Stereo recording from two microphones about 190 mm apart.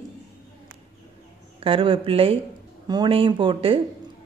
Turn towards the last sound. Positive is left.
turn(degrees=-30)  # may be behind; listen again after turning